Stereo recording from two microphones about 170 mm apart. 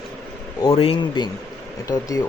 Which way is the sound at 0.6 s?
30° left (ahead or behind).